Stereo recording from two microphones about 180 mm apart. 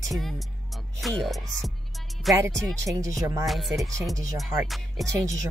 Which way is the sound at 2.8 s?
20° right (ahead or behind).